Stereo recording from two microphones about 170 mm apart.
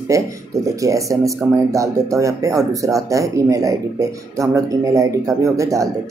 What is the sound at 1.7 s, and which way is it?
Speech, 20° right (ahead or behind).